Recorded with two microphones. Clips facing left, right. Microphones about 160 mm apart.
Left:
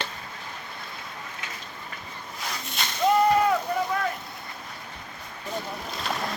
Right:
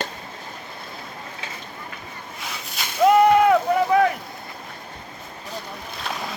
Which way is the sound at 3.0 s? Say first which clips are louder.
Right 6 dB; 70° right (ahead or behind).